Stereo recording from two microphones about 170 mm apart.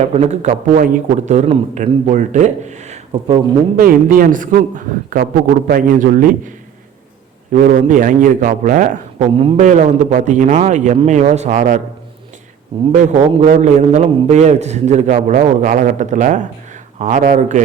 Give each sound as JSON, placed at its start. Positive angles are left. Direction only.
{"t": 0.0, "sound": "a man's voice", "side_deg": -40}
{"t": 3.8, "sound": "a man's voice", "side_deg": -55}
{"t": 7.5, "sound": "a man's voice", "side_deg": -50}
{"t": 12.7, "sound": "a man's voice", "side_deg": -35}